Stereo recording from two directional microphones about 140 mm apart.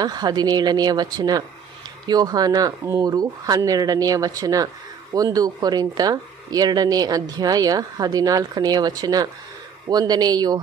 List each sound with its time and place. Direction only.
0.0 s speech: 30° right (ahead or behind)